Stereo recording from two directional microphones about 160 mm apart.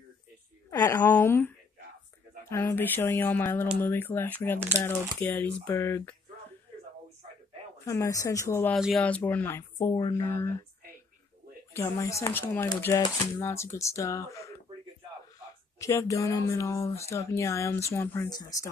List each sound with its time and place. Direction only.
0.7 s speech: 20° left (ahead or behind)
2.5 s speech: 15° left (ahead or behind)
7.8 s speech: 20° left (ahead or behind)
8.7 s speech: centre (ahead or behind); by 9.9 s 15° left (ahead or behind)
9.9 s speech: 30° left (ahead or behind)
10.2 s speech: 15° left (ahead or behind)
11.7 s speech: 20° left (ahead or behind)
15.8 s speech: 20° left (ahead or behind)